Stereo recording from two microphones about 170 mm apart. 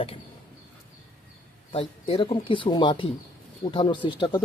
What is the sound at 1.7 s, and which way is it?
Speech, 35° left (ahead or behind).